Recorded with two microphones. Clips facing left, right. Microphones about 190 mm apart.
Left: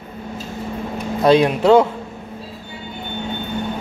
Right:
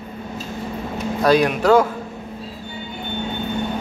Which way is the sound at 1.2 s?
25° left (ahead or behind).